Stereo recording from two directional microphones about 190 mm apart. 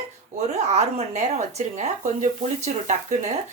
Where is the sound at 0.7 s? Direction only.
35° right (ahead or behind).